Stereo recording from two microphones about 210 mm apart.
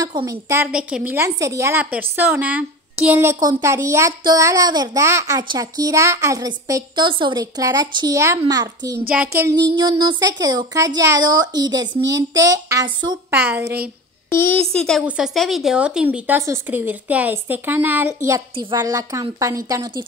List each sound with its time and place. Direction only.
0.0 s speech: 15° right (ahead or behind)
9.4 s child singing: 15° right (ahead or behind)
10.4 s speech: 20° right (ahead or behind)
11.0 s child singing: 20° right (ahead or behind)
12.1 s speech: 15° right (ahead or behind)
13.3 s speech: 10° right (ahead or behind)
14.3 s speech: 10° left (ahead or behind); by 20.1 s 20° right (ahead or behind)